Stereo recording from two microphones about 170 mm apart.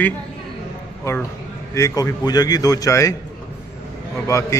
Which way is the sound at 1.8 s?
20° left (ahead or behind).